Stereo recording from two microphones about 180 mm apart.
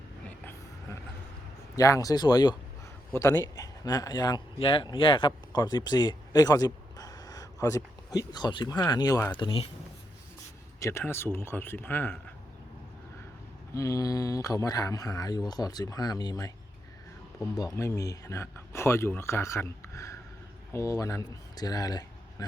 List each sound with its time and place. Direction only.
0.3 s vehicle: 10° left (ahead or behind)
1.7 s a man's voice: 20° left (ahead or behind)
10.8 s speech: 15° left (ahead or behind)
13.7 s a man's voice: 20° left (ahead or behind)
17.7 s speech: 20° left (ahead or behind)